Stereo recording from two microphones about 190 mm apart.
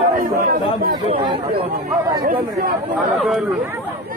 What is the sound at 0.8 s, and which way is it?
Speech, 30° right (ahead or behind).